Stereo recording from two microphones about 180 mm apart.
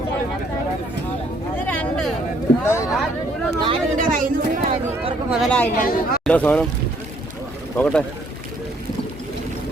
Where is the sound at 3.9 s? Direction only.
50° right (ahead or behind).